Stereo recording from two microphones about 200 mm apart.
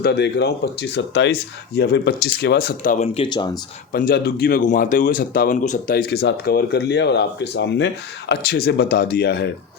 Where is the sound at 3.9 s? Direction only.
45° left (ahead or behind).